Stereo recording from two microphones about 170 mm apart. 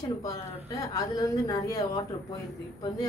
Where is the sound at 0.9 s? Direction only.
20° left (ahead or behind).